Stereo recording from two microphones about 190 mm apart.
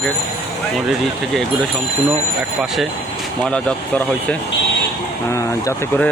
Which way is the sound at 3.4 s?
5° left (ahead or behind).